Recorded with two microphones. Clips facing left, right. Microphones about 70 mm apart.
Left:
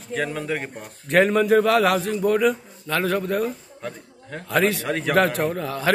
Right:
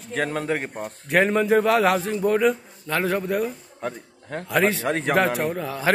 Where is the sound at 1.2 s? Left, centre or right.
Right.